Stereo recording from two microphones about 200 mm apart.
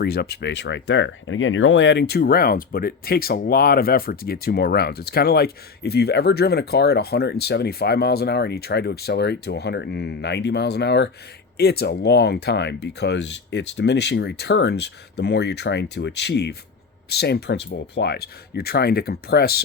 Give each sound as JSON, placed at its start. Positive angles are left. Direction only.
{"t": 0.0, "sound": "speech", "side_deg": 55}